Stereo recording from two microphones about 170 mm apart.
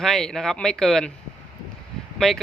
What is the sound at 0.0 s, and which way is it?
A man's voice, 5° left (ahead or behind).